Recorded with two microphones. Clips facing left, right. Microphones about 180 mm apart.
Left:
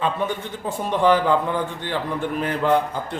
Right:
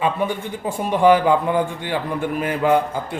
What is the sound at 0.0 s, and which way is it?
Speech, 10° right (ahead or behind).